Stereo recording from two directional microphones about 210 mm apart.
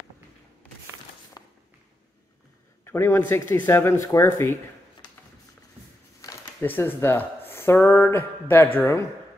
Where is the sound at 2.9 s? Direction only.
10° left (ahead or behind).